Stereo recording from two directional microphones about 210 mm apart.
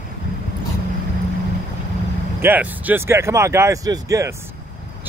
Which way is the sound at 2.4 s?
10° right (ahead or behind).